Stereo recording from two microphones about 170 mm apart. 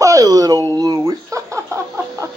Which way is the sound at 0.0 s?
20° right (ahead or behind).